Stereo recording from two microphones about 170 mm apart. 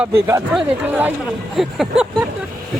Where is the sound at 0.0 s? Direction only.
15° right (ahead or behind).